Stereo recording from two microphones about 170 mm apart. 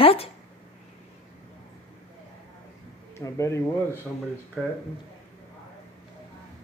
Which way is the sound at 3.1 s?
20° left (ahead or behind).